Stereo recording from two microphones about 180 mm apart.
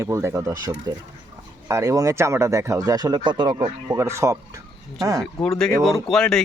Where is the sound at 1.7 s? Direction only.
20° right (ahead or behind).